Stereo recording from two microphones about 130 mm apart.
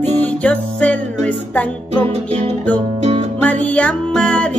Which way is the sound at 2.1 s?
55° right (ahead or behind).